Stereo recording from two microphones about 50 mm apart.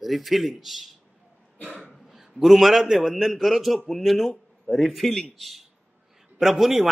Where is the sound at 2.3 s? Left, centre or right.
Centre.